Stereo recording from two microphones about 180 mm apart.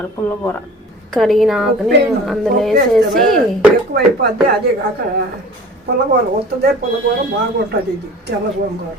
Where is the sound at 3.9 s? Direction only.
60° right (ahead or behind).